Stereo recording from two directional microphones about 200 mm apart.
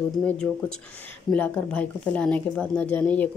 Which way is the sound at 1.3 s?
5° left (ahead or behind).